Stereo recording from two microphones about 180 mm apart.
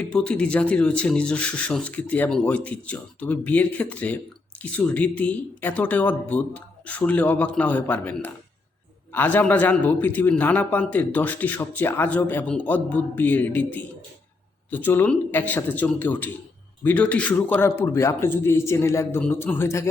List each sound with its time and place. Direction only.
0.1 s a man's voice: 5° left (ahead or behind)